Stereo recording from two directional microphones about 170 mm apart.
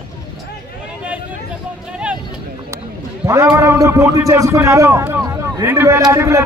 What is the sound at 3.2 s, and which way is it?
A man's voice, 15° right (ahead or behind).